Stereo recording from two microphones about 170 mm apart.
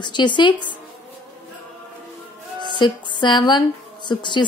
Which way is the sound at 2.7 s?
25° left (ahead or behind).